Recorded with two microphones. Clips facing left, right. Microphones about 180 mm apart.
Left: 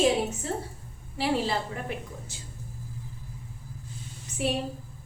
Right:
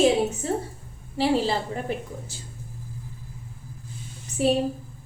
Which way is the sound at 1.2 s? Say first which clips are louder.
Right 4 dB; 30° right (ahead or behind).